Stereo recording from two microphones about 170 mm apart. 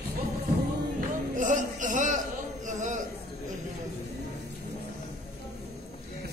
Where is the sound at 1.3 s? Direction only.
50° right (ahead or behind).